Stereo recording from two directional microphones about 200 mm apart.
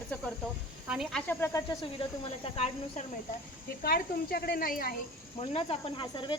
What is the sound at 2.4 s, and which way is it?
Speech, 30° left (ahead or behind).